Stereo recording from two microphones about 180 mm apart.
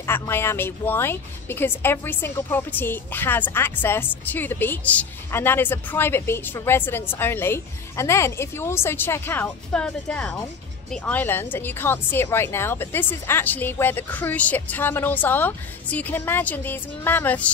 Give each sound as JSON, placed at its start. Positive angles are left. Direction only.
{"t": 0.0, "sound": "speech", "side_deg": 15}